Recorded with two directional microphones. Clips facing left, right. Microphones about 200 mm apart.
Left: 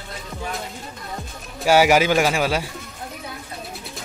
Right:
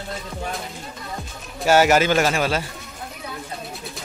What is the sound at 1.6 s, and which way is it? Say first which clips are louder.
A man's voice: even; 10° left (ahead or behind).